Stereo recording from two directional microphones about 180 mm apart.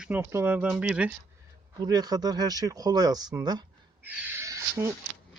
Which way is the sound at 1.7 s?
20° right (ahead or behind).